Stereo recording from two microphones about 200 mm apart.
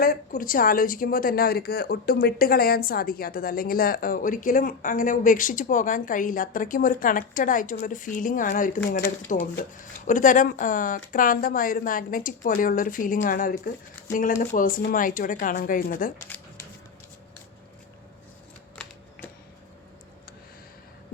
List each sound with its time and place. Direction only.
0.0 s speech: 45° left (ahead or behind)
8.9 s speech: 60° left (ahead or behind)
9.3 s speech: 40° left (ahead or behind)
16.2 s a sound: 10° left (ahead or behind)